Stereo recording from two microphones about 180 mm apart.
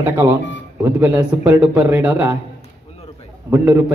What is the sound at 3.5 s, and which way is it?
Speech, 10° right (ahead or behind).